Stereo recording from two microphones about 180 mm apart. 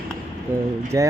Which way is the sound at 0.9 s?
20° right (ahead or behind).